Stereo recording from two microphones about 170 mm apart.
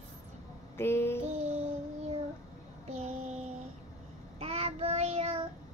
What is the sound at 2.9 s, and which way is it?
Child singing, 40° right (ahead or behind).